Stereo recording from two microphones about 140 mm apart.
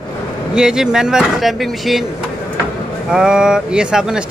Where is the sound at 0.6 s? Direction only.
5° right (ahead or behind).